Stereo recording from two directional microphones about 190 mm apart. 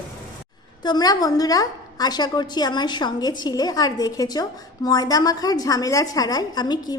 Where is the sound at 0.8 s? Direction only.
20° left (ahead or behind).